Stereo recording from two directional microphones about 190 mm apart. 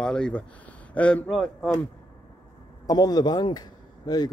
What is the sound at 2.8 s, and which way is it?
A man's voice, 20° left (ahead or behind).